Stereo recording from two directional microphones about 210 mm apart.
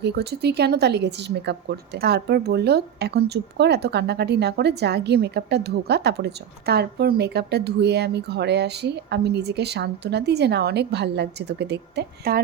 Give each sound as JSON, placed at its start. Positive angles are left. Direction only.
{"t": 0.0, "sound": "a woman's voice", "side_deg": -50}